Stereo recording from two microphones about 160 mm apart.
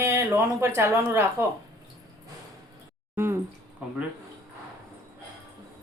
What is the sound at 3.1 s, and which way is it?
Speech, 15° right (ahead or behind).